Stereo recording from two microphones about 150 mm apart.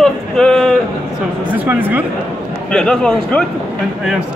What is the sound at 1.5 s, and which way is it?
Speech, 10° right (ahead or behind).